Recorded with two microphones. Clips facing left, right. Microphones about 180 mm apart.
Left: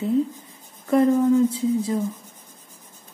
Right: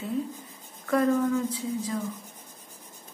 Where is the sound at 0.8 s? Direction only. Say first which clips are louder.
Left 6 dB; 20° left (ahead or behind).